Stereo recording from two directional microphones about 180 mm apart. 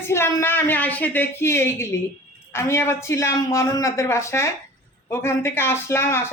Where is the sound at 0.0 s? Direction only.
15° left (ahead or behind).